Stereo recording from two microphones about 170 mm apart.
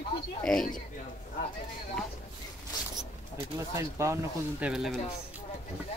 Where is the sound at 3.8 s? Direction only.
15° right (ahead or behind).